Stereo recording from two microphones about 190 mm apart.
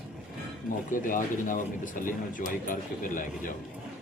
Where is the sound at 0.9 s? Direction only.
45° left (ahead or behind).